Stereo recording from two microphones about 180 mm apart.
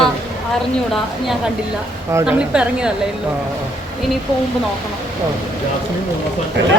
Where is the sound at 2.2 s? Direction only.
5° right (ahead or behind).